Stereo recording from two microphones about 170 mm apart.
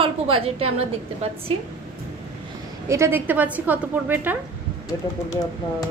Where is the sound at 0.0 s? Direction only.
35° right (ahead or behind).